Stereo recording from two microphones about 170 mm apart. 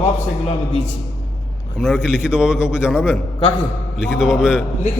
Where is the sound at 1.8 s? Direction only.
5° right (ahead or behind).